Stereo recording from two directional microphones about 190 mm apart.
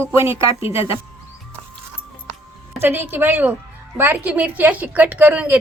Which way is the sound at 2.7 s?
10° right (ahead or behind).